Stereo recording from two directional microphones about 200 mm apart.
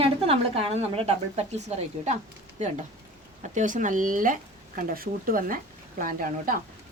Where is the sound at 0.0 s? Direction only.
30° right (ahead or behind).